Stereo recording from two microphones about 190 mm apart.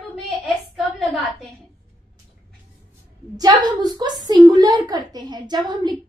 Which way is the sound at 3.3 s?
20° right (ahead or behind).